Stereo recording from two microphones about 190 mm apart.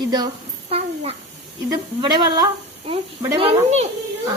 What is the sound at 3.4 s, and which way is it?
Speech, 30° right (ahead or behind).